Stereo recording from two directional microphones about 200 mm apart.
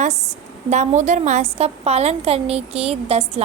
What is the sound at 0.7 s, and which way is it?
A woman's voice, 35° right (ahead or behind).